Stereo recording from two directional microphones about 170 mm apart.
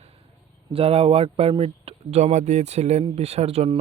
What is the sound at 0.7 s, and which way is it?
Speech, 35° right (ahead or behind).